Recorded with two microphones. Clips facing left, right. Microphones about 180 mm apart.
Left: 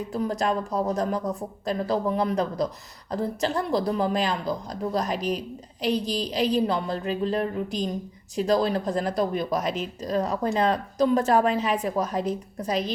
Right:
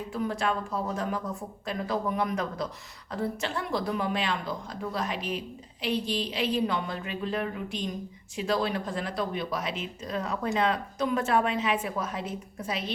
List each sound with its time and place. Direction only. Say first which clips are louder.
0.1 s speech: left 3 dB; 40° left (ahead or behind)